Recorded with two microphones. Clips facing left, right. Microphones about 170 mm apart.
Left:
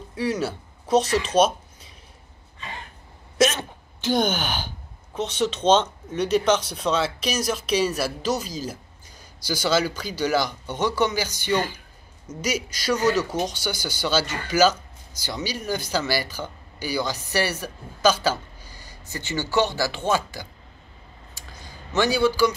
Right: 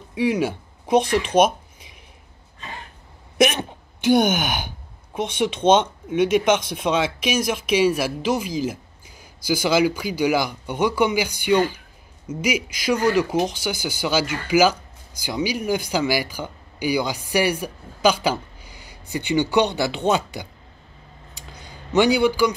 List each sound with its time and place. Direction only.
0.1 s speech: 10° right (ahead or behind)
3.3 s speech: 15° right (ahead or behind)
21.9 s speech: 15° right (ahead or behind)